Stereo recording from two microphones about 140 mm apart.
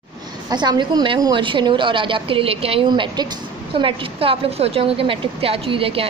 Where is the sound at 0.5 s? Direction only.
30° right (ahead or behind).